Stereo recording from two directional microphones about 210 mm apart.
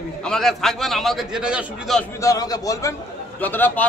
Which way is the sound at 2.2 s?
15° left (ahead or behind).